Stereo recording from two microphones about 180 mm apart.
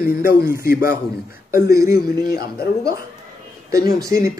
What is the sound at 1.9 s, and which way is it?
Speech, 55° left (ahead or behind).